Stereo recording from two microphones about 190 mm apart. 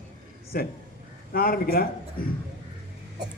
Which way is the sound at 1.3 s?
50° left (ahead or behind).